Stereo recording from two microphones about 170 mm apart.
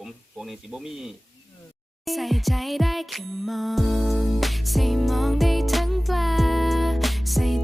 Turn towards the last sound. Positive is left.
turn(degrees=0)  # may be behind; listen again after turning